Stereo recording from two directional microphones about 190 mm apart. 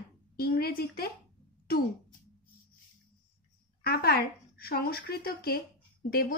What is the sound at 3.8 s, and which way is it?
Speech, 55° left (ahead or behind).